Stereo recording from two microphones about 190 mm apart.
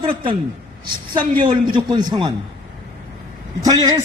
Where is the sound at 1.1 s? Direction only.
25° right (ahead or behind).